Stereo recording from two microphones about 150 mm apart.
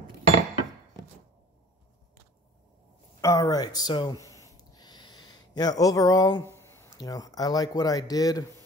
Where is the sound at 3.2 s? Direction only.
20° left (ahead or behind).